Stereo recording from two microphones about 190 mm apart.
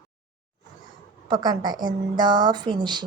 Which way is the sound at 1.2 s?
25° right (ahead or behind).